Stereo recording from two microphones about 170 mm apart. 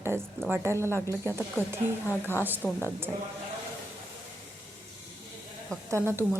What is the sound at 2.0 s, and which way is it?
Speech, 15° left (ahead or behind).